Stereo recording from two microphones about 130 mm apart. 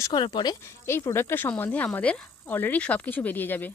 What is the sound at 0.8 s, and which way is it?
Speech, 20° left (ahead or behind).